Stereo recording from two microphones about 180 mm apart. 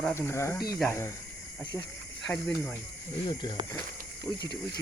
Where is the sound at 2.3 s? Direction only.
10° left (ahead or behind).